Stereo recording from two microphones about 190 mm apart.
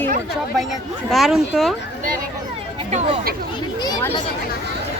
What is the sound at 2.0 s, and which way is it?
Speech, 45° right (ahead or behind).